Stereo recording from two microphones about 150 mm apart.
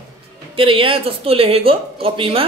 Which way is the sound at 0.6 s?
35° right (ahead or behind).